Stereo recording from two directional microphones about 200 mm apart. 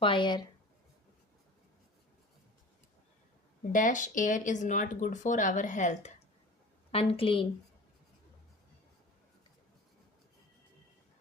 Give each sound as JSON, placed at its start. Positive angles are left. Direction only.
{"t": 0.0, "sound": "a woman's voice", "side_deg": 25}
{"t": 3.7, "sound": "speech", "side_deg": 40}
{"t": 6.9, "sound": "a woman's voice", "side_deg": 25}